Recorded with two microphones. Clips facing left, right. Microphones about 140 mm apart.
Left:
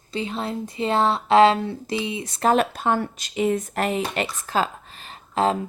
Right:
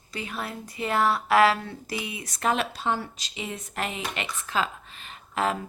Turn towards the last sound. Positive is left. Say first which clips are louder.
# left 5 dB
turn(degrees=30)  # may be behind; listen again after turning